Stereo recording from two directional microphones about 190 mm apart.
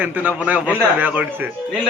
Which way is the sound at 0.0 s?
10° right (ahead or behind).